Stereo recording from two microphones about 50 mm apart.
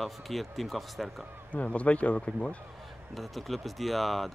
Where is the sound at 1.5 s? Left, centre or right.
Left.